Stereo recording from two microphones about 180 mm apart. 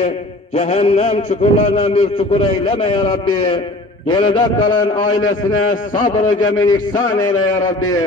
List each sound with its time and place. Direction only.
0.6 s a man's voice: 40° left (ahead or behind)
6.3 s a man's voice: 20° left (ahead or behind)